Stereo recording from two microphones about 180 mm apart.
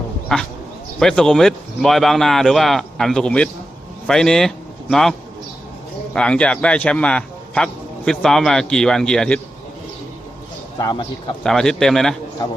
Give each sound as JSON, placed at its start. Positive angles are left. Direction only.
{"t": 0.3, "sound": "a man's voice", "side_deg": 0}
{"t": 6.1, "sound": "a man's voice", "side_deg": 5}
{"t": 10.8, "sound": "a man's voice", "side_deg": 25}
{"t": 11.4, "sound": "a man's voice", "side_deg": 5}